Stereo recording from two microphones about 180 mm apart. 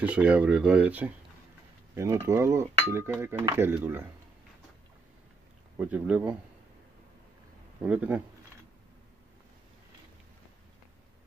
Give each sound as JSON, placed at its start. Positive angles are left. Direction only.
{"t": 0.0, "sound": "cutlery", "side_deg": -5}
{"t": 5.8, "sound": "cutlery", "side_deg": -10}
{"t": 7.8, "sound": "cutlery", "side_deg": -10}